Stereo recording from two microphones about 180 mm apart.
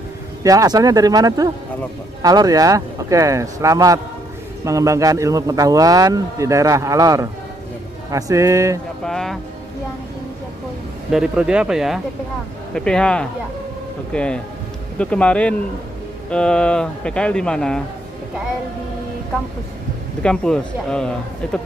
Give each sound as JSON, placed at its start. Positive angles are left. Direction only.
{"t": 0.4, "sound": "a man's voice", "side_deg": -20}
{"t": 9.0, "sound": "speech", "side_deg": 5}
{"t": 11.1, "sound": "speech", "side_deg": -5}
{"t": 20.2, "sound": "speech", "side_deg": 5}